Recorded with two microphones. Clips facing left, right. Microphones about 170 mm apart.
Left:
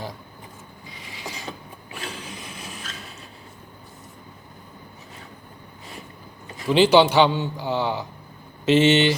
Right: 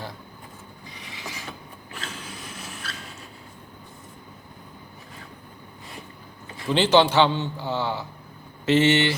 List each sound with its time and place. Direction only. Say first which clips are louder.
1.9 s vehicle: left 3 dB; 15° left (ahead or behind)
6.7 s a man's voice: left 3 dB; 10° left (ahead or behind)